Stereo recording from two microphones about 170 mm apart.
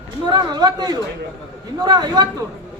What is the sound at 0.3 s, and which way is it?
A man's voice, 25° right (ahead or behind).